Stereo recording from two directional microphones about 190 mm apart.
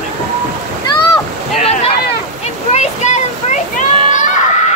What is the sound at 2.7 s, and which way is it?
Children playing, 35° left (ahead or behind).